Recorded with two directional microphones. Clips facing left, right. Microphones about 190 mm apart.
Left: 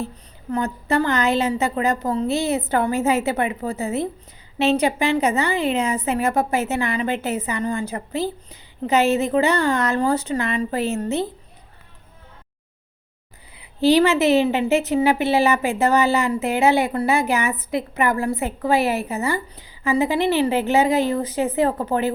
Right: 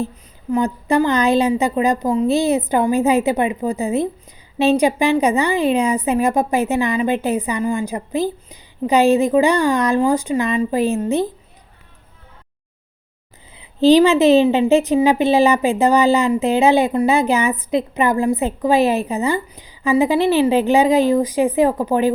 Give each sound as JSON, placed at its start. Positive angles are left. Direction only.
{"t": 0.5, "sound": "a woman's voice", "side_deg": -15}
{"t": 13.6, "sound": "a woman's voice", "side_deg": -20}